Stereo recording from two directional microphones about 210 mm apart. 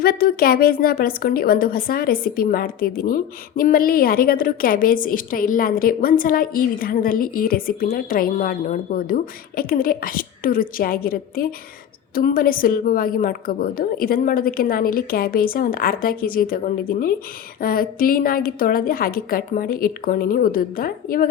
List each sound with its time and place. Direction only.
0.0 s a woman's voice: 45° left (ahead or behind)